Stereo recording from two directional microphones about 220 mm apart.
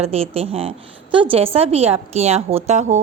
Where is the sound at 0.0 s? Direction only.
25° right (ahead or behind).